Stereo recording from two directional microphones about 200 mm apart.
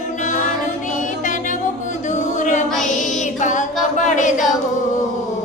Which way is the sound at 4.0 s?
40° left (ahead or behind).